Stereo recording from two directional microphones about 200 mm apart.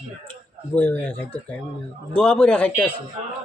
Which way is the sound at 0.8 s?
5° left (ahead or behind).